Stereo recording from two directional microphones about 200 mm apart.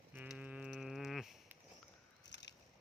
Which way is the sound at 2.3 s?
60° left (ahead or behind).